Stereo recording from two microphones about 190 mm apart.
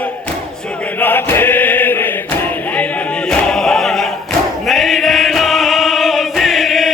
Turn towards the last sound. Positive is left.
turn(degrees=0)  # may be behind; listen again after turning